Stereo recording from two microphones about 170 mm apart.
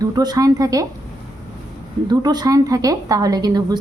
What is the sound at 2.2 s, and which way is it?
A woman's voice, 25° right (ahead or behind).